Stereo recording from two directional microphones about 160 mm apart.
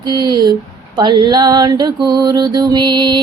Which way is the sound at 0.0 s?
25° right (ahead or behind).